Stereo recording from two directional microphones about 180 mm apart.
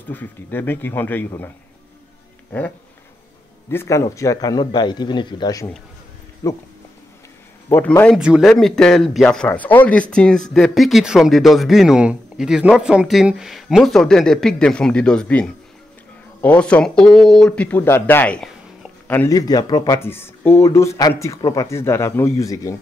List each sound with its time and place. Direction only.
0.1 s speech: 10° left (ahead or behind)
3.7 s speech: 15° left (ahead or behind)
7.7 s speech: 10° left (ahead or behind)
8.2 s speech: 5° right (ahead or behind)
19.3 s speech: 20° left (ahead or behind)